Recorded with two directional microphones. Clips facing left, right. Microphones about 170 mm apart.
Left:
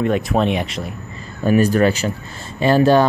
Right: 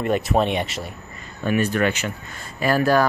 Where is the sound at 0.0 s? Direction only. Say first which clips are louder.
Left 3 dB; centre (ahead or behind).